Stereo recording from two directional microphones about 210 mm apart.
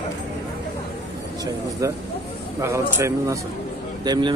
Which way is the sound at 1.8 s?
15° right (ahead or behind).